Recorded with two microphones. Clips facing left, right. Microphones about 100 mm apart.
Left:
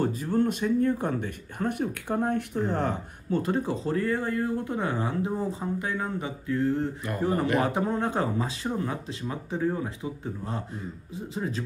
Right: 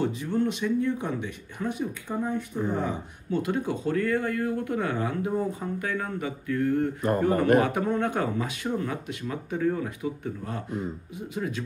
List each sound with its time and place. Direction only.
0.0 s speech: 45° left (ahead or behind); by 3.0 s 65° left (ahead or behind)
3.3 s speech: 40° left (ahead or behind); by 6.9 s 25° left (ahead or behind)
7.0 s speech: 45° right (ahead or behind)
7.6 s speech: 30° left (ahead or behind)